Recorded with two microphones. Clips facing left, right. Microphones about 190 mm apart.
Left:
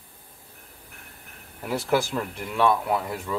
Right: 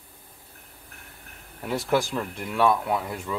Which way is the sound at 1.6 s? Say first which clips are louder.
Even; centre (ahead or behind).